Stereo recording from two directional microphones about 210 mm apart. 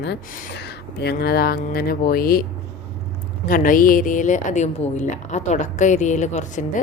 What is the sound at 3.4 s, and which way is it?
A woman's voice, 40° left (ahead or behind).